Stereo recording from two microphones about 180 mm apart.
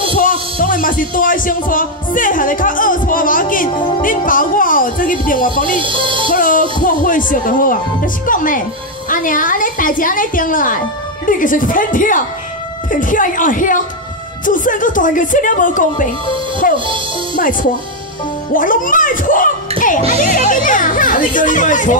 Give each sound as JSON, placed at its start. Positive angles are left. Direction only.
{"t": 0.1, "sound": "a woman's voice", "side_deg": 45}
{"t": 5.8, "sound": "music", "side_deg": -30}
{"t": 6.3, "sound": "music", "side_deg": 50}
{"t": 6.8, "sound": "a woman's voice", "side_deg": 50}
{"t": 16.7, "sound": "music", "side_deg": -30}
{"t": 17.4, "sound": "a woman's voice", "side_deg": 50}